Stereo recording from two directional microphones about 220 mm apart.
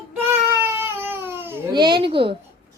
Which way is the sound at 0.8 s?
10° right (ahead or behind).